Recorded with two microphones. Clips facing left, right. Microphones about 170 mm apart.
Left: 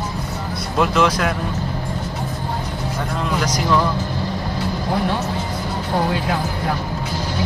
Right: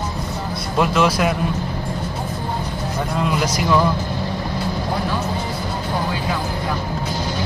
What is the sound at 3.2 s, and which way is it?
Speech, 5° right (ahead or behind).